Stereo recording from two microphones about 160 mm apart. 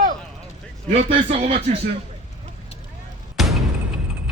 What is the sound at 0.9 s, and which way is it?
Speech, 40° right (ahead or behind).